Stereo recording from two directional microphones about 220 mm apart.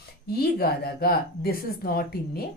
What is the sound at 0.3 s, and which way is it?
Speech, 45° left (ahead or behind).